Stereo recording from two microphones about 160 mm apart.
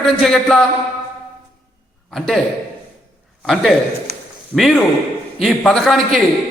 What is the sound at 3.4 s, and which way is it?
A man's voice, centre (ahead or behind).